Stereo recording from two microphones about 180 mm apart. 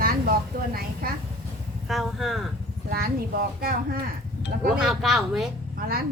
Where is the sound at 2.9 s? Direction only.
55° right (ahead or behind).